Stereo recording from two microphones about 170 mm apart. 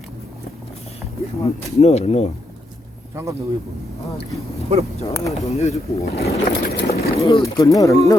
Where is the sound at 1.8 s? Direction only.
40° left (ahead or behind).